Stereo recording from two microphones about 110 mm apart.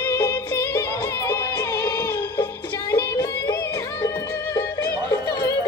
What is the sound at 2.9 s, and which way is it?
Music, 30° left (ahead or behind).